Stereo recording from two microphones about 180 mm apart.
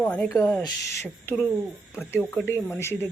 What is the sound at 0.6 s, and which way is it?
Speech, 20° left (ahead or behind).